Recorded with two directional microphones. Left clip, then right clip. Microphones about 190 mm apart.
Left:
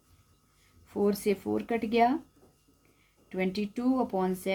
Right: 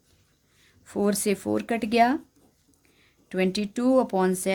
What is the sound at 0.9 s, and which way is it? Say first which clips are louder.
Speech: right 3 dB; 50° right (ahead or behind).